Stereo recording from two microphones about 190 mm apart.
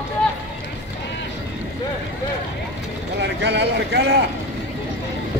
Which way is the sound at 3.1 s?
65° right (ahead or behind).